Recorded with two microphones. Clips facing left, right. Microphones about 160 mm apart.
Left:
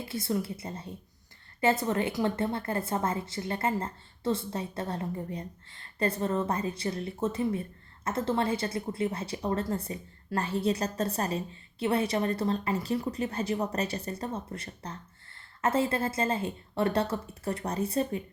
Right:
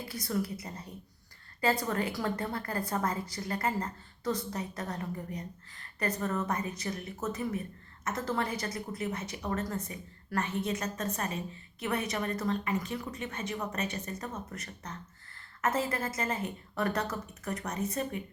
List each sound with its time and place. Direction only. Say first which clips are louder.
0.0 s a woman's voice: left 2 dB; 25° left (ahead or behind)